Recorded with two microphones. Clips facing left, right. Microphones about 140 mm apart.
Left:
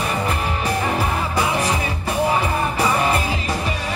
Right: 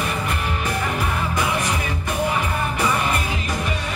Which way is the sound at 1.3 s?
35° left (ahead or behind).